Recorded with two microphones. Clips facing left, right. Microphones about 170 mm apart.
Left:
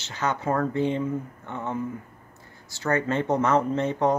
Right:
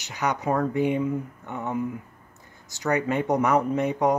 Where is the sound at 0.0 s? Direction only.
15° right (ahead or behind).